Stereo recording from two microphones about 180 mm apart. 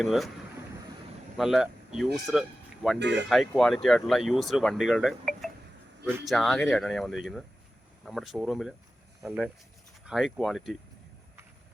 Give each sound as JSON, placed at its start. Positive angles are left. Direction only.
{"t": 0.0, "sound": "speech", "side_deg": 0}
{"t": 1.4, "sound": "speech", "side_deg": 0}
{"t": 3.0, "sound": "speech", "side_deg": -80}
{"t": 3.2, "sound": "speech", "side_deg": 0}